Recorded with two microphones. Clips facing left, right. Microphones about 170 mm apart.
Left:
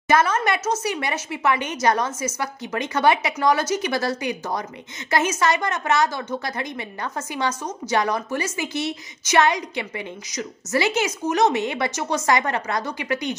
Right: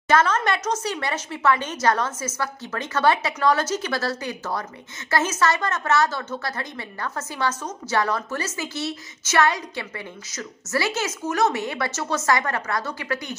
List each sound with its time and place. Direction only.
0.1 s a woman's voice: 10° left (ahead or behind)